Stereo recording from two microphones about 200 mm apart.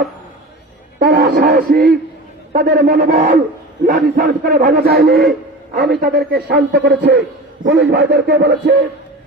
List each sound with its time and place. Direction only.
0.9 s music: 50° right (ahead or behind)
1.5 s a man's voice: 50° right (ahead or behind)